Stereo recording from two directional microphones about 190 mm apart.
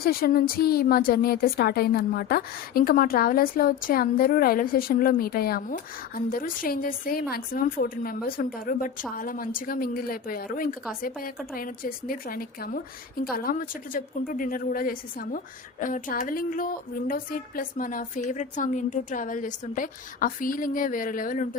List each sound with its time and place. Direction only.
0.0 s a woman's voice: 50° left (ahead or behind)